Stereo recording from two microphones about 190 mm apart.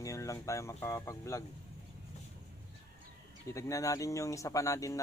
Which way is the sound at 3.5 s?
15° left (ahead or behind).